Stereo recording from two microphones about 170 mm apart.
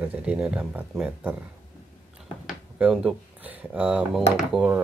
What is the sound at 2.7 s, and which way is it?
Speech, 5° right (ahead or behind).